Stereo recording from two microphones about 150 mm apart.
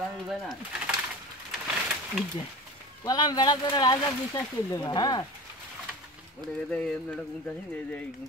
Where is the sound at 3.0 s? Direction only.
25° left (ahead or behind).